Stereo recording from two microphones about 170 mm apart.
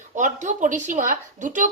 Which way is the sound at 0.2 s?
45° right (ahead or behind).